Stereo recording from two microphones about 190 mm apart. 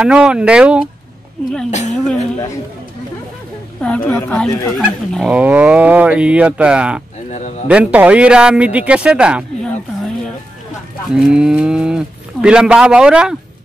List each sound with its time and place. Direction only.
0.0 s speech: 5° right (ahead or behind)
1.7 s speech: 40° left (ahead or behind)
3.8 s speech: 10° left (ahead or behind)
7.2 s speech: 35° left (ahead or behind)
7.6 s speech: 5° right (ahead or behind)
11.1 s speech: 5° right (ahead or behind)